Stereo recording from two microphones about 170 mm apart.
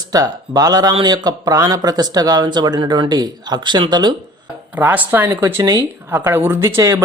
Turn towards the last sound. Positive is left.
turn(degrees=-15)  # may be behind; listen again after turning